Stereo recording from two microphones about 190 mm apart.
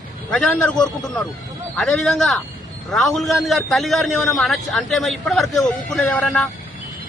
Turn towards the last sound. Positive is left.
turn(degrees=5)  # may be behind; listen again after turning